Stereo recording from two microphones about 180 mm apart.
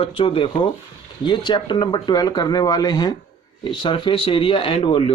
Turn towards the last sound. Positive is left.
turn(degrees=30)  # may be behind; listen again after turning